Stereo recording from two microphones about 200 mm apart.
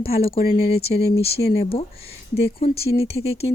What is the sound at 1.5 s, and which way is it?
Speech, 50° left (ahead or behind).